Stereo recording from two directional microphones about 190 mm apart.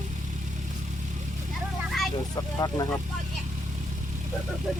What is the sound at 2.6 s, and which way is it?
Speech, 20° left (ahead or behind).